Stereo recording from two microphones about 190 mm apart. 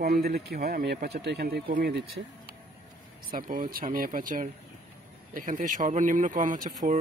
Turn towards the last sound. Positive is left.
turn(degrees=-45)  # may be behind; listen again after turning